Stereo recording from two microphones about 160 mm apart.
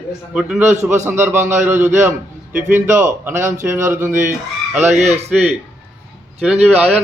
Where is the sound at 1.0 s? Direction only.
15° right (ahead or behind).